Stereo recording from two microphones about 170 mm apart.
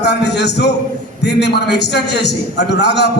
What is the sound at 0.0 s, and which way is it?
A man's voice, 90° left.